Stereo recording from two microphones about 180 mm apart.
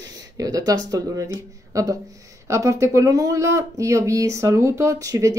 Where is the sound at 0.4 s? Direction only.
20° right (ahead or behind).